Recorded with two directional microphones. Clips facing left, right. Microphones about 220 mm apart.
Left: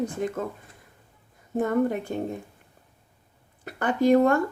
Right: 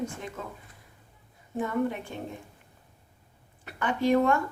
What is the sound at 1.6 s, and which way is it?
Speech, 45° left (ahead or behind).